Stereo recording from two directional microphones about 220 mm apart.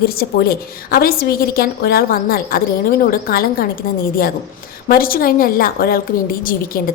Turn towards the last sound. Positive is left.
turn(degrees=40)  # may be behind; listen again after turning